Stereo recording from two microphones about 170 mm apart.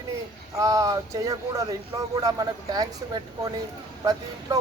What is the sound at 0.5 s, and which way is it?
Speech, 20° right (ahead or behind).